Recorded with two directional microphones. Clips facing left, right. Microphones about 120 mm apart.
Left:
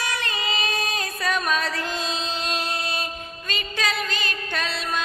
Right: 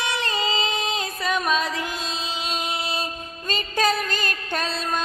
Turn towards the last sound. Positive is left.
turn(degrees=-40)  # may be behind; listen again after turning